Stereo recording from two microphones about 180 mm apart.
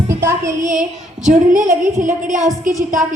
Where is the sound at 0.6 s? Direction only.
45° right (ahead or behind).